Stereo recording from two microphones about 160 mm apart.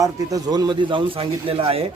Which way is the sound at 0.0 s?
20° right (ahead or behind).